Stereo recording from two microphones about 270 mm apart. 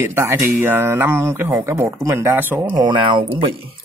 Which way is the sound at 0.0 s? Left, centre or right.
Centre.